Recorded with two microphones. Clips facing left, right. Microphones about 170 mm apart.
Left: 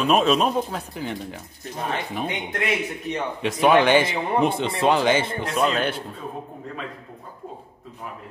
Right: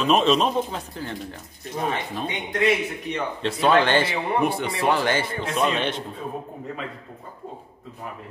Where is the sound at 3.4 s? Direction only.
15° left (ahead or behind).